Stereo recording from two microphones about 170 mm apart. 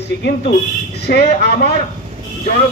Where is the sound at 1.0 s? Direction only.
70° left (ahead or behind).